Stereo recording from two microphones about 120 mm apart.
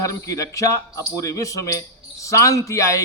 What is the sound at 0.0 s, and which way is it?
A man's voice, 25° left (ahead or behind).